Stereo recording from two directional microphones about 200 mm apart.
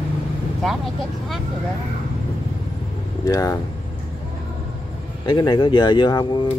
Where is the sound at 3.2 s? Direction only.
15° left (ahead or behind).